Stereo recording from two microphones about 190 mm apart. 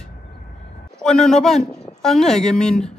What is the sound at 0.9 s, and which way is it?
A man's voice, 5° left (ahead or behind).